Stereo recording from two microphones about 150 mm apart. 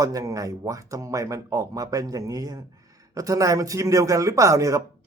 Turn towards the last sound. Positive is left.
turn(degrees=-20)  # may be behind; listen again after turning